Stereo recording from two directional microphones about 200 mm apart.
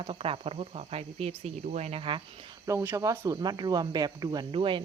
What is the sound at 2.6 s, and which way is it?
Speech, 15° right (ahead or behind).